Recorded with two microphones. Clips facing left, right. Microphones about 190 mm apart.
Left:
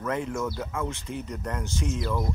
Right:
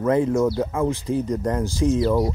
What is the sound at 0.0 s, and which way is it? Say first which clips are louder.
Speech: right 10 dB; 35° right (ahead or behind).